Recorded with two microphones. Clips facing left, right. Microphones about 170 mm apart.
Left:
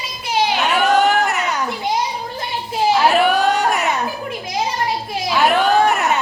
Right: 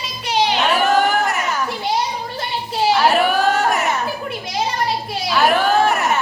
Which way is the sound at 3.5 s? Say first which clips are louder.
Even; 15° left (ahead or behind).